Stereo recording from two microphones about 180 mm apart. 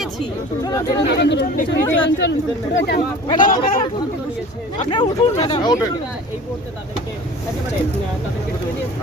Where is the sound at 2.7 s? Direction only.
60° left (ahead or behind).